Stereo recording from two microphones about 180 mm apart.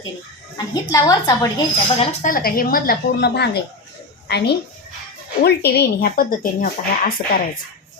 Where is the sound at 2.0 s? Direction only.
50° left (ahead or behind).